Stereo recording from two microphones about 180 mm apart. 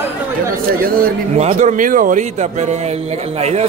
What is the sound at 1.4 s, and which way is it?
A man's voice, 40° right (ahead or behind).